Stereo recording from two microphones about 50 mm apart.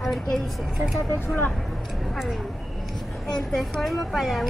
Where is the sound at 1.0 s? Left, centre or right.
Left.